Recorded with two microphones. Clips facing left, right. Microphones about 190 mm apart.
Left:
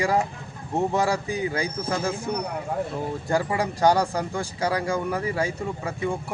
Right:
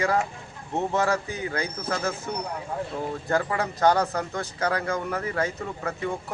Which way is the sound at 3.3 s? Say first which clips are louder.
Left 2 dB; 10° left (ahead or behind).